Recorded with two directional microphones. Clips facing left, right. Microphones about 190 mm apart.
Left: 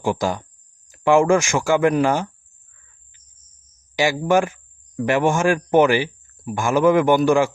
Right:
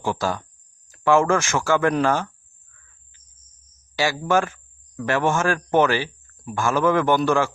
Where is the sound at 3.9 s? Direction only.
15° left (ahead or behind).